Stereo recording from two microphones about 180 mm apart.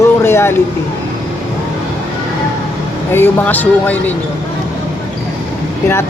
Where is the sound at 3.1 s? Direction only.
10° left (ahead or behind).